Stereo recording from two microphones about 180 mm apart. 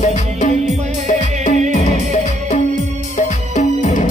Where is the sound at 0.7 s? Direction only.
40° right (ahead or behind).